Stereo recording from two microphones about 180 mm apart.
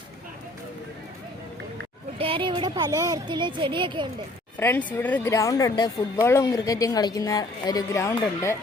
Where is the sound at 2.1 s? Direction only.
30° right (ahead or behind).